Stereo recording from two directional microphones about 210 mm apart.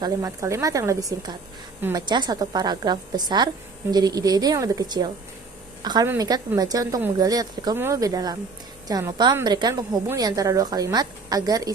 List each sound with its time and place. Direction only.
0.0 s a woman's voice: 15° right (ahead or behind)